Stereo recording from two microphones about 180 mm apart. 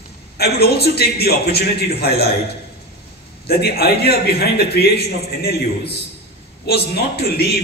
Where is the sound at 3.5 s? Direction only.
60° left (ahead or behind).